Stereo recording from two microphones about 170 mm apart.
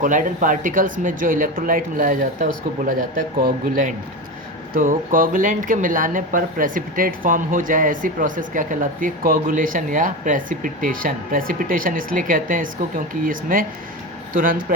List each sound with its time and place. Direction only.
0.0 s speech: 50° right (ahead or behind)